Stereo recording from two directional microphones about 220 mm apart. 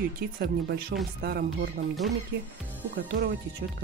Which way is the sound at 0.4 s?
45° right (ahead or behind).